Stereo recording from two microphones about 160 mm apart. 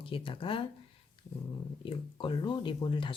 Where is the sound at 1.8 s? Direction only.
30° left (ahead or behind).